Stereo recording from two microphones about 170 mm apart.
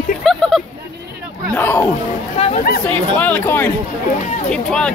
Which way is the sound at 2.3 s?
35° left (ahead or behind).